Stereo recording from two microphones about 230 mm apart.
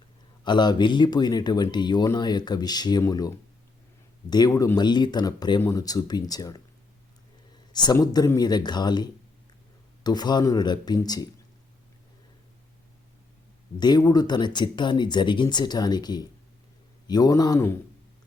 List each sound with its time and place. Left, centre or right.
0.4 s speech: centre
7.7 s speech: centre
13.7 s speech: centre